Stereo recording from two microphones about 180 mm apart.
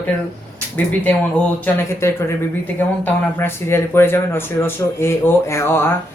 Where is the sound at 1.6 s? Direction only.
15° left (ahead or behind).